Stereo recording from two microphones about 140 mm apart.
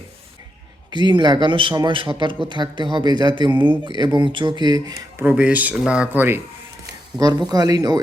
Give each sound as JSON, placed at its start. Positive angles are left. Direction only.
{"t": 0.9, "sound": "a man's voice", "side_deg": -35}
{"t": 5.2, "sound": "speech", "side_deg": -10}
{"t": 7.2, "sound": "speech", "side_deg": -30}